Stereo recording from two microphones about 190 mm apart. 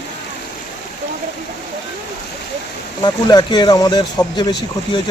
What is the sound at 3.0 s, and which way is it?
Speech, 25° left (ahead or behind).